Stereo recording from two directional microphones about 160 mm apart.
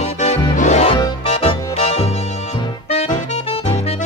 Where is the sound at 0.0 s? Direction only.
45° left (ahead or behind).